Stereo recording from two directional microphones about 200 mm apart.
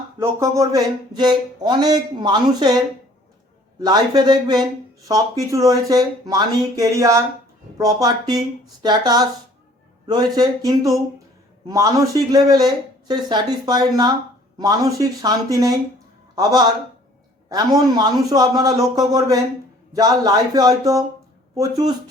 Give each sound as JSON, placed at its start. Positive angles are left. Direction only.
{"t": 0.2, "sound": "speech", "side_deg": -15}
{"t": 3.8, "sound": "a man's voice", "side_deg": -20}
{"t": 17.7, "sound": "speech", "side_deg": -20}